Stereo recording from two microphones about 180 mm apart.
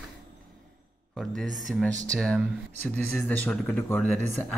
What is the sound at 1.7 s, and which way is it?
Speech, 5° left (ahead or behind).